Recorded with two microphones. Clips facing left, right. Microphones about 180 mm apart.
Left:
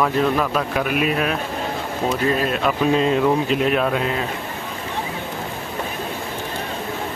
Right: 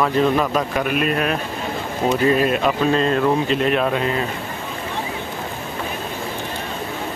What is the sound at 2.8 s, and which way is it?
Speech, 10° left (ahead or behind).